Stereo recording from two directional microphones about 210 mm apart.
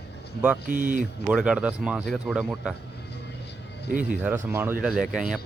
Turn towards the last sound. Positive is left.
turn(degrees=0)  # may be behind; listen again after turning